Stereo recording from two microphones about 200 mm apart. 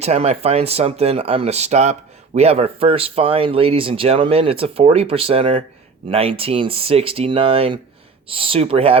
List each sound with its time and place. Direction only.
0.0 s speech: 30° right (ahead or behind)